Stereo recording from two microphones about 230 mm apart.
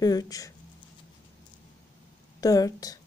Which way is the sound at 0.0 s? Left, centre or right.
Centre.